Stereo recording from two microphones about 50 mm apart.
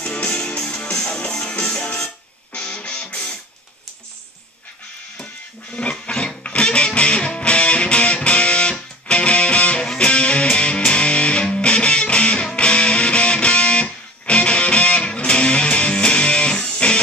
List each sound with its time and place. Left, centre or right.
0.0 s music: left
5.1 s music: centre